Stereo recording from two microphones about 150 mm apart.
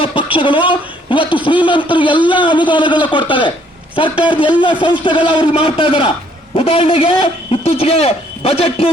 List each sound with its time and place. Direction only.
0.0 s speech: 35° left (ahead or behind)